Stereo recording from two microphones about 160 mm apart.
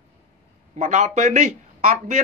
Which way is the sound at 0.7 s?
50° right (ahead or behind).